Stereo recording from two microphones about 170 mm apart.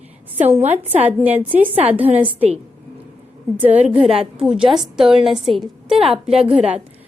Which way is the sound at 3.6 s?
40° right (ahead or behind).